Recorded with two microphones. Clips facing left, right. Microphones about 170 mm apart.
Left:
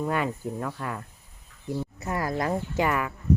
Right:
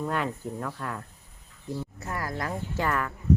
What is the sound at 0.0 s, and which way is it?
Speech, 5° left (ahead or behind).